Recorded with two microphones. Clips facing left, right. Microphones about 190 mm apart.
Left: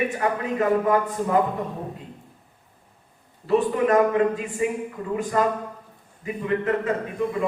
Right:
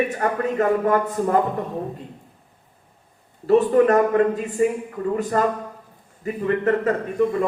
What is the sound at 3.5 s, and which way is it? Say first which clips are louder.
A man's voice: right 4 dB; 40° right (ahead or behind).